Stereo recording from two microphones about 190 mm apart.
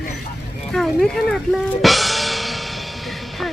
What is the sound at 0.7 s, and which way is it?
Speech, 5° left (ahead or behind).